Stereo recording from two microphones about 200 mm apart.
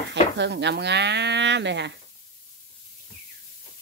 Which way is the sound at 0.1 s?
60° right (ahead or behind).